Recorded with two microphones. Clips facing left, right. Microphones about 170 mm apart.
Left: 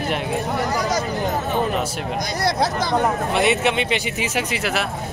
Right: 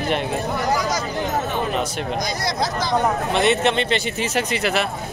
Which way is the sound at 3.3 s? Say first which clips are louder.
Right 1 dB; 10° left (ahead or behind).